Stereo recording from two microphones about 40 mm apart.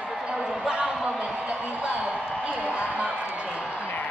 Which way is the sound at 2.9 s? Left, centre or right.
Right.